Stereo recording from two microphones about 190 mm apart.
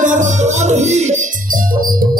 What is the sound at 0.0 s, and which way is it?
Music, 40° right (ahead or behind).